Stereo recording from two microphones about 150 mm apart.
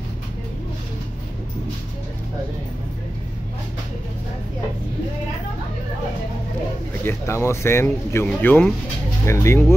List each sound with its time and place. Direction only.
7.1 s speech: 15° left (ahead or behind)